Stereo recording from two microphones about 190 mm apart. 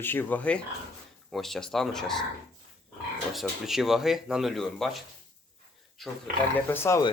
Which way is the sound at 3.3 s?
Centre (ahead or behind).